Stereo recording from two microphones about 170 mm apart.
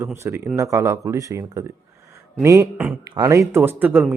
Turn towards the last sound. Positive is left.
turn(degrees=-10)  # may be behind; listen again after turning